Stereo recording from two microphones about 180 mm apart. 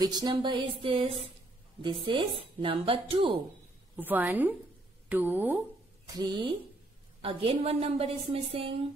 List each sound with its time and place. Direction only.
0.0 s a woman's voice: 20° right (ahead or behind)
3.9 s a woman's voice: 10° right (ahead or behind)
6.0 s a woman's voice: 25° right (ahead or behind)